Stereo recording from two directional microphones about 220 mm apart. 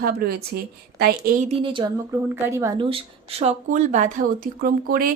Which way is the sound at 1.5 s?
25° right (ahead or behind).